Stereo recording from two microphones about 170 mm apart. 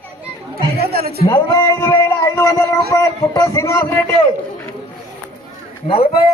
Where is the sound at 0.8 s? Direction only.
65° right (ahead or behind).